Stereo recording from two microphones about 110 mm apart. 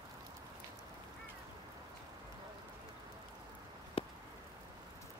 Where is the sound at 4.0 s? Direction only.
60° left (ahead or behind).